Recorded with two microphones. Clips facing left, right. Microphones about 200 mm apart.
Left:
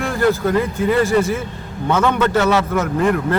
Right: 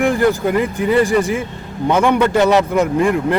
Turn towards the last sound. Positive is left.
turn(degrees=-15)  # may be behind; listen again after turning